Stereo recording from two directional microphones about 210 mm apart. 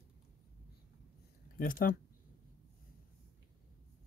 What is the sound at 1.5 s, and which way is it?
Speech, 40° left (ahead or behind).